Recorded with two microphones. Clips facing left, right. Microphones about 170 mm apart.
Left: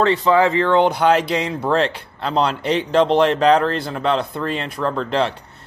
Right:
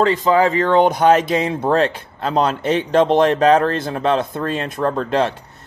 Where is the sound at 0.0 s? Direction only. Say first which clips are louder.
Right 1 dB; 40° right (ahead or behind).